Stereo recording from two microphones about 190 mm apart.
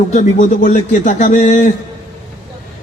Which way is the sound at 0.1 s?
40° left (ahead or behind).